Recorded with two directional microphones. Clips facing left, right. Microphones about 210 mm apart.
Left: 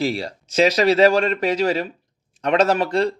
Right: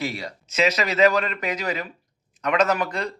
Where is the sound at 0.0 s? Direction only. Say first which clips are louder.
Left 6 dB; 30° left (ahead or behind).